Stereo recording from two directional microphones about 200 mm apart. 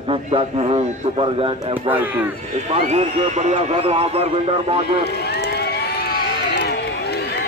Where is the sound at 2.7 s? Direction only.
35° right (ahead or behind).